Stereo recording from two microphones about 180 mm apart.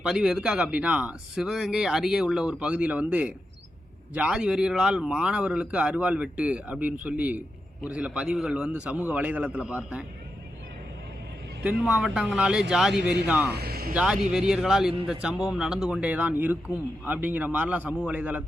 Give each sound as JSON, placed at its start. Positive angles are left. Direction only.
{"t": 0.0, "sound": "a man's voice", "side_deg": -5}
{"t": 11.6, "sound": "speech", "side_deg": -5}
{"t": 13.5, "sound": "speech", "side_deg": -60}
{"t": 13.9, "sound": "a man's voice", "side_deg": -5}